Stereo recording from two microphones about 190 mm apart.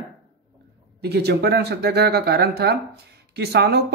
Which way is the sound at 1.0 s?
60° right (ahead or behind).